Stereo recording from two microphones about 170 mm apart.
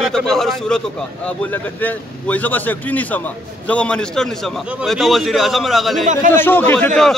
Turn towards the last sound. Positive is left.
turn(degrees=5)  # may be behind; listen again after turning